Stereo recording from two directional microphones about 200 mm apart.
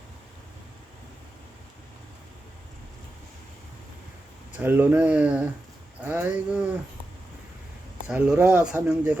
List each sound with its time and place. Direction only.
4.5 s speech: 10° right (ahead or behind)
8.0 s speech: 5° right (ahead or behind)